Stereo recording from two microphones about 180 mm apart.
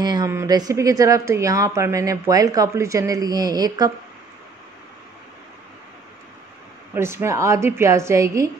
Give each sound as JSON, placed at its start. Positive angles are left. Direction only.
{"t": 0.0, "sound": "speech", "side_deg": -20}
{"t": 7.0, "sound": "a woman's voice", "side_deg": -15}